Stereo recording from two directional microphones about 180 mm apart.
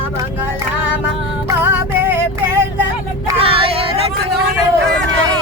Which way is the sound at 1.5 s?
10° right (ahead or behind).